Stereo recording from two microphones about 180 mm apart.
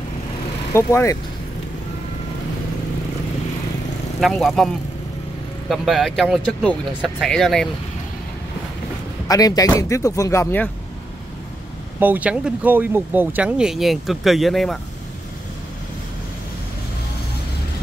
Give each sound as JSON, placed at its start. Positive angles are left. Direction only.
{"t": 0.7, "sound": "speech", "side_deg": 15}
{"t": 4.2, "sound": "speech", "side_deg": 0}
{"t": 5.7, "sound": "speech", "side_deg": 0}
{"t": 9.3, "sound": "speech", "side_deg": 20}
{"t": 12.0, "sound": "speech", "side_deg": -10}